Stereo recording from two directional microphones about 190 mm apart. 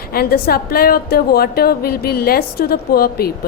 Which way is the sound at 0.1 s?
55° left (ahead or behind).